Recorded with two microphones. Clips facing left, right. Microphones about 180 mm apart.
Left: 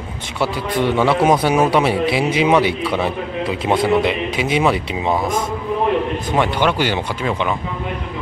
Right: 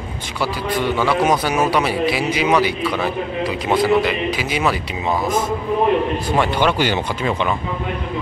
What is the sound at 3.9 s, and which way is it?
Speech, 25° left (ahead or behind).